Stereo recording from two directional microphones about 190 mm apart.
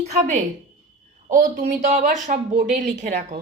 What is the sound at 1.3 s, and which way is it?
A woman's voice, 45° right (ahead or behind).